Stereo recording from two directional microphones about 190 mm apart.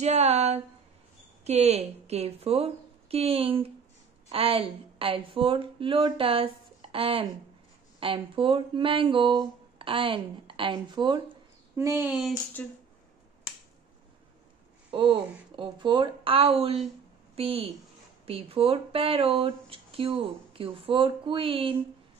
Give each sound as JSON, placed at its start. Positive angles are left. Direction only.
{"t": 0.0, "sound": "a woman's voice", "side_deg": -35}
{"t": 12.6, "sound": "speech", "side_deg": 10}
{"t": 14.9, "sound": "a woman's voice", "side_deg": -25}